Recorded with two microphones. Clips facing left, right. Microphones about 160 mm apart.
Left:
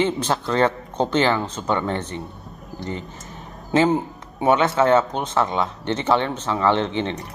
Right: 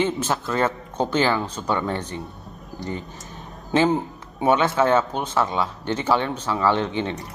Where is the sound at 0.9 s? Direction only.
10° right (ahead or behind).